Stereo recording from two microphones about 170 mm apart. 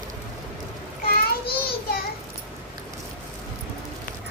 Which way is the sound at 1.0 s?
60° left (ahead or behind).